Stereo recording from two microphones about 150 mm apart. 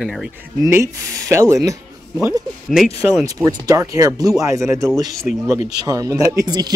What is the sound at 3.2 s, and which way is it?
Speech, 25° right (ahead or behind).